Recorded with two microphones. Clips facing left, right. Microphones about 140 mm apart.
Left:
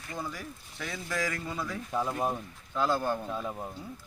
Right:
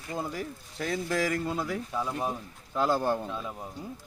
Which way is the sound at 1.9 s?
10° left (ahead or behind).